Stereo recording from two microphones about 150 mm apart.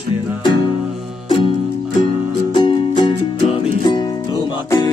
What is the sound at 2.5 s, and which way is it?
Music, 30° left (ahead or behind).